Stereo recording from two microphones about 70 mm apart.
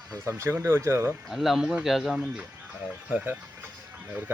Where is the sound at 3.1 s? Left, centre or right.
Right.